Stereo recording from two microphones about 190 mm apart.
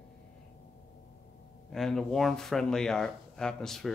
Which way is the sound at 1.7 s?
Centre (ahead or behind).